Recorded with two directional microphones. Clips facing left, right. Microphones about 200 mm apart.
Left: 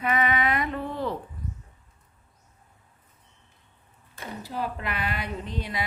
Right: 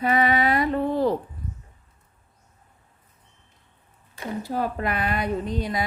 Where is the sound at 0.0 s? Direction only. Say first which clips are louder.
Right 4 dB; 35° right (ahead or behind).